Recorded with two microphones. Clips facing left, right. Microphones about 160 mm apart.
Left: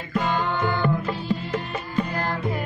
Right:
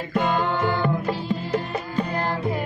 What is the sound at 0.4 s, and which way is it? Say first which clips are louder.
Music: right 1 dB; 30° right (ahead or behind).